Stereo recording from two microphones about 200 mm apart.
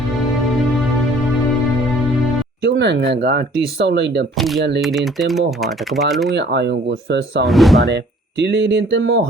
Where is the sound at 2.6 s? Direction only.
60° right (ahead or behind).